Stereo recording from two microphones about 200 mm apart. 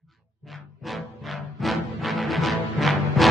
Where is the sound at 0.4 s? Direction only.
Centre (ahead or behind).